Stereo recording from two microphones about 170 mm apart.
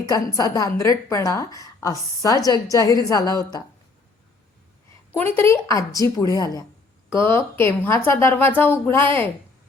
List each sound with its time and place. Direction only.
0.1 s a woman's voice: 20° left (ahead or behind)
5.2 s a woman's voice: 15° left (ahead or behind)